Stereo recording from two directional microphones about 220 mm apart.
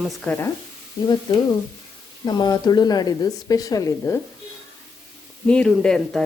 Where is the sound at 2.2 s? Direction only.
20° left (ahead or behind).